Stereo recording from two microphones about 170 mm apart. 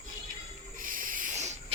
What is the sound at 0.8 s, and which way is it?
Owl, 50° right (ahead or behind).